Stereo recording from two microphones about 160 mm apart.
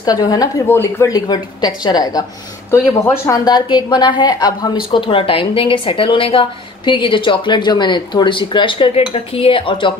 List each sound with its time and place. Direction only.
0.0 s a woman's voice: 25° left (ahead or behind)